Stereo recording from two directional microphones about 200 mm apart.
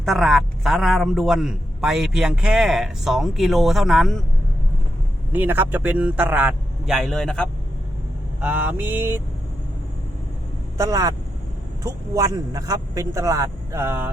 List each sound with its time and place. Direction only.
0.0 s a man's voice: centre (ahead or behind)
5.3 s a man's voice: 10° right (ahead or behind)
8.4 s a man's voice: 5° right (ahead or behind)
10.8 s a man's voice: 15° right (ahead or behind)